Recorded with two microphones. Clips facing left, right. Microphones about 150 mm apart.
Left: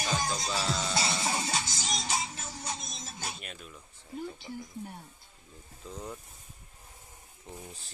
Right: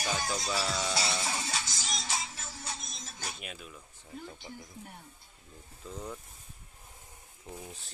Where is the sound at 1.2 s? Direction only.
25° left (ahead or behind).